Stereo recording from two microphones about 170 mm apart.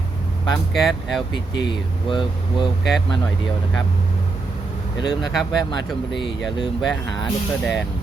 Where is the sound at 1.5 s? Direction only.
25° left (ahead or behind).